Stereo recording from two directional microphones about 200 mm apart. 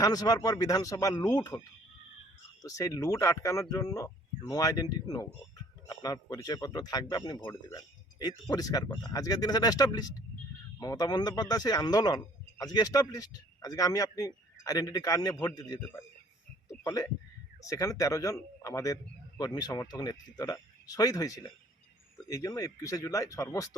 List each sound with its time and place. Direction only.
0.0 s speech: 20° left (ahead or behind)
16.8 s speech: 20° left (ahead or behind)